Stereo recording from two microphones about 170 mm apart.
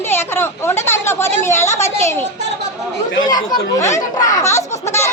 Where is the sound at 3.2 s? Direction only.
25° left (ahead or behind).